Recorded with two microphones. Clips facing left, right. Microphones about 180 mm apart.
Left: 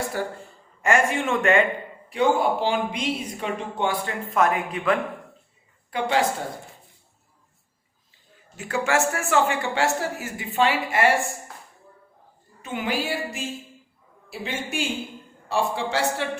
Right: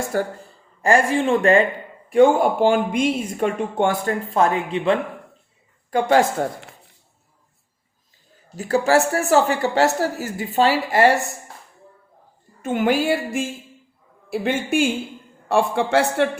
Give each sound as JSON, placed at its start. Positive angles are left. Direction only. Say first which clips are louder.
{"t": 0.1, "sound": "speech", "louder": "right 8 dB", "side_deg": -45}
{"t": 0.8, "sound": "speech", "louder": "right 4 dB", "side_deg": -35}
{"t": 2.0, "sound": "speech", "louder": "right 7 dB", "side_deg": -50}
{"t": 4.4, "sound": "speech", "louder": "right 2 dB", "side_deg": -30}
{"t": 5.9, "sound": "speech", "louder": "right 7 dB", "side_deg": -45}
{"t": 8.5, "sound": "speech", "louder": "right 6 dB", "side_deg": -35}
{"t": 12.6, "sound": "speech", "louder": "right 8 dB", "side_deg": -50}